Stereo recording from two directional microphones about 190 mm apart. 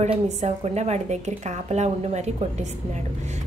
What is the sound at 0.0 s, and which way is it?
A woman's voice, 35° right (ahead or behind).